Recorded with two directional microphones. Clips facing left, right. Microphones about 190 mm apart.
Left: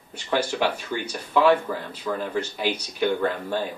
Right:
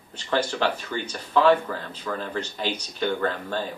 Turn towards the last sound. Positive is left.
turn(degrees=10)  # may be behind; listen again after turning